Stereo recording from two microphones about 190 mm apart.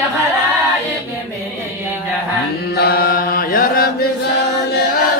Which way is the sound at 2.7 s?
55° left (ahead or behind).